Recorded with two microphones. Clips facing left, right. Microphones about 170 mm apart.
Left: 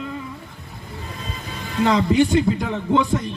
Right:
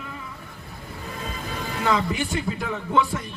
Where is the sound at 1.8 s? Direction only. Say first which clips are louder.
Left 8 dB; 25° left (ahead or behind).